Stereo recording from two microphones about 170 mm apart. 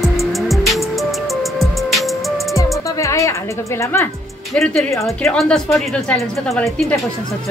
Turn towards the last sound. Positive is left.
turn(degrees=5)  # may be behind; listen again after turning